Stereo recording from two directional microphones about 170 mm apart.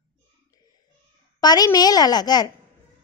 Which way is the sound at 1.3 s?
20° left (ahead or behind).